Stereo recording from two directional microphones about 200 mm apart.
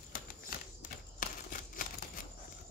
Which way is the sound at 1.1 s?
45° left (ahead or behind).